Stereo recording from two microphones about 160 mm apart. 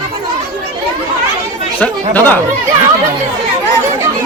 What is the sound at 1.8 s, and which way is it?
Speech, 10° left (ahead or behind).